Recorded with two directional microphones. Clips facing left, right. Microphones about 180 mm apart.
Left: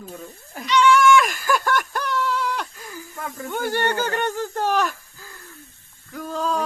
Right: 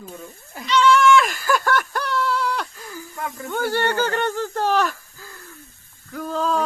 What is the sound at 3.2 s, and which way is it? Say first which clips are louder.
Snake: right 2 dB; 50° left (ahead or behind).